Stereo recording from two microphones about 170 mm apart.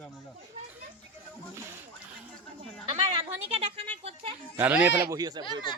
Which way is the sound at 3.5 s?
30° right (ahead or behind).